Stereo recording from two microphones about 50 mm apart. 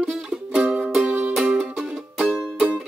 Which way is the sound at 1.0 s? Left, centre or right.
Right.